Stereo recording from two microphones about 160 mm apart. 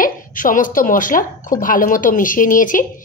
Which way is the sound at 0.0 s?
60° left (ahead or behind).